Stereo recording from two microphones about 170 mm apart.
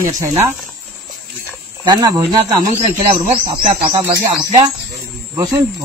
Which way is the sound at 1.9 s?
25° right (ahead or behind).